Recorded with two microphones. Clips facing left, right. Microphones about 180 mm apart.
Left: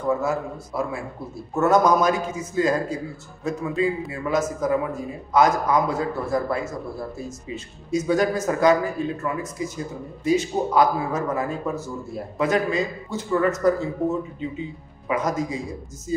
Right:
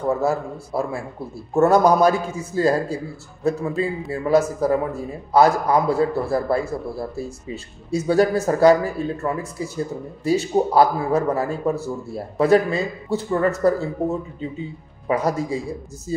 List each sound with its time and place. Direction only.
0.2 s a man's voice: 35° right (ahead or behind)
15.0 s a man's voice: 35° right (ahead or behind)